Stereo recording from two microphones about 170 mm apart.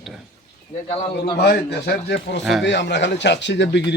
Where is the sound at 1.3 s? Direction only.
70° left (ahead or behind).